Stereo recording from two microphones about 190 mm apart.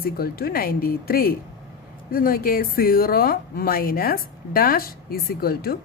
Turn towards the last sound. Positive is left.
turn(degrees=55)  # may be behind; listen again after turning